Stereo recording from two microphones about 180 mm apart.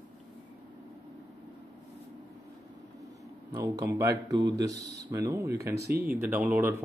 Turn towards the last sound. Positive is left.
turn(degrees=-10)  # may be behind; listen again after turning